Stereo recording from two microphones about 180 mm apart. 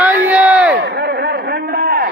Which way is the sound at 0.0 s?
10° right (ahead or behind).